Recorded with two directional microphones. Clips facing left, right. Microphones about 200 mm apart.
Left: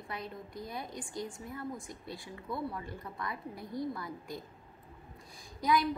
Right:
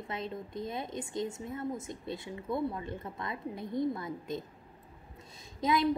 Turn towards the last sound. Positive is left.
turn(degrees=-25)  # may be behind; listen again after turning